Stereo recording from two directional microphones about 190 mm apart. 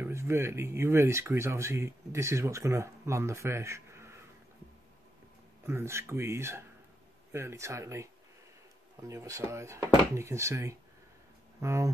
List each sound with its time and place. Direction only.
0.0 s speech: 15° right (ahead or behind)
5.7 s speech: 15° right (ahead or behind)